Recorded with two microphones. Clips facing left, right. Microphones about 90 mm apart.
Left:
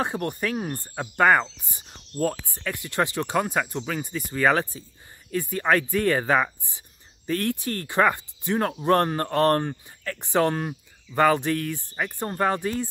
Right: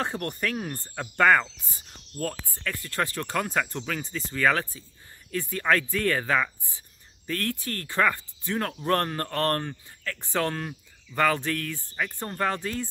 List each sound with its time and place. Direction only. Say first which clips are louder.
0.0 s speech: left 3 dB; 15° left (ahead or behind)